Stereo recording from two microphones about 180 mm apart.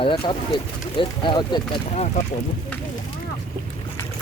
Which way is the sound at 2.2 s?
40° left (ahead or behind).